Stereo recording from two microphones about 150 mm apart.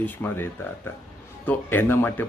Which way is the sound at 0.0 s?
15° left (ahead or behind).